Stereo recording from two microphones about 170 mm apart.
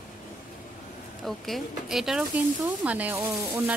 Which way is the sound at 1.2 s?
Centre (ahead or behind).